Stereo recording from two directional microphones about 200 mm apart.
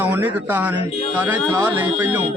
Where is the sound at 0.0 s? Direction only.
10° right (ahead or behind).